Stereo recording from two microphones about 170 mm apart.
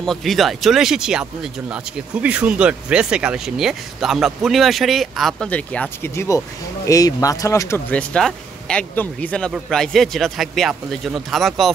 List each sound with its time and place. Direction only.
0.0 s speech: centre (ahead or behind); by 7.8 s 20° left (ahead or behind)
7.9 s speech: 5° left (ahead or behind)